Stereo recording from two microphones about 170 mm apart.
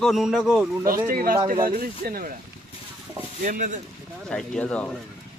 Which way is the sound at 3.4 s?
50° right (ahead or behind).